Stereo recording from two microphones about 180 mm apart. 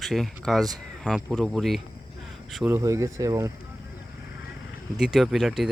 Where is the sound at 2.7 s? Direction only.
15° right (ahead or behind).